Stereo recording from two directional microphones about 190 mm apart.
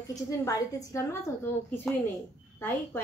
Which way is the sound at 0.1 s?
20° left (ahead or behind).